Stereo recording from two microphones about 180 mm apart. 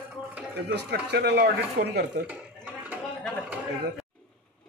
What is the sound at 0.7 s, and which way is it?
Speech, 70° right (ahead or behind).